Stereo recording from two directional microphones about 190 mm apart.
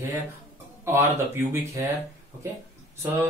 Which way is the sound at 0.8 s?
10° right (ahead or behind).